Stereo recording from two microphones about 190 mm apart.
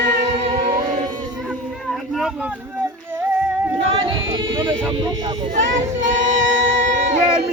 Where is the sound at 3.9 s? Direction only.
25° right (ahead or behind).